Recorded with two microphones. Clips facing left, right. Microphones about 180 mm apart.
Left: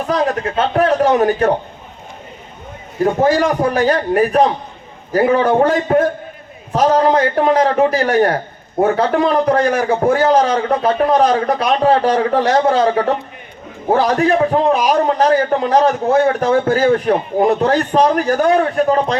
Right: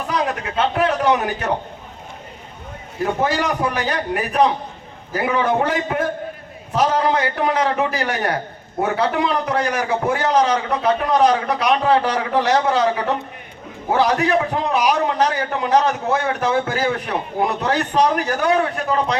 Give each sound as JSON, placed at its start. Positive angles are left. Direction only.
{"t": 0.1, "sound": "a man's voice", "side_deg": 40}
{"t": 3.0, "sound": "a man's voice", "side_deg": 40}